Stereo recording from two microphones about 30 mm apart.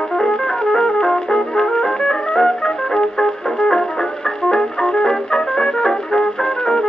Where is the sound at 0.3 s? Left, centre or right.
Left.